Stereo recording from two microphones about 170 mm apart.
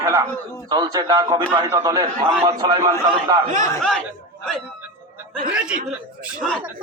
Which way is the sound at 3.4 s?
45° right (ahead or behind).